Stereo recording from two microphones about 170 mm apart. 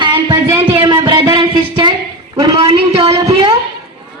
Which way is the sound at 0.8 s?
30° right (ahead or behind).